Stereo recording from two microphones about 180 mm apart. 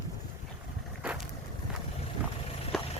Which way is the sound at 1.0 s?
5° right (ahead or behind).